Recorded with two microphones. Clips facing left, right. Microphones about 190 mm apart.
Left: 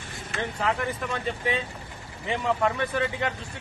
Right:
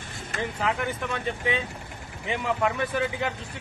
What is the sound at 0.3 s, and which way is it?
Speech, centre (ahead or behind).